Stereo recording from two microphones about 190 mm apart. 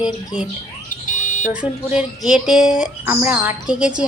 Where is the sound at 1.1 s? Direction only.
40° left (ahead or behind).